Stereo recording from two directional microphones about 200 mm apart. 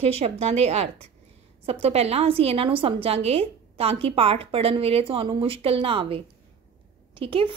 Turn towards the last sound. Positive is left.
turn(degrees=-25)  # may be behind; listen again after turning